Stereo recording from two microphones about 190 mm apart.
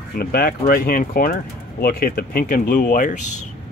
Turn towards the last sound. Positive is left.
turn(degrees=45)  # may be behind; listen again after turning